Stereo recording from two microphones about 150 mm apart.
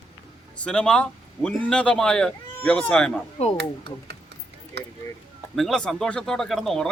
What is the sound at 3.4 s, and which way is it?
Speech, 45° left (ahead or behind).